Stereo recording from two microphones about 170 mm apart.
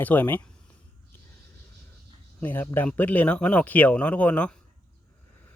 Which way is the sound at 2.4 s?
10° left (ahead or behind).